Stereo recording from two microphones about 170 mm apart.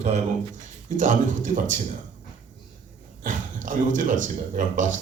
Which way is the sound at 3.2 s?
50° right (ahead or behind).